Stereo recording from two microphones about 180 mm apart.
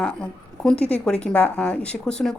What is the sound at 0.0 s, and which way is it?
A woman's voice, 5° left (ahead or behind).